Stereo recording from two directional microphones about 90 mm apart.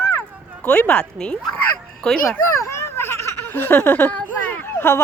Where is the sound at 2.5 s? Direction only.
35° left (ahead or behind).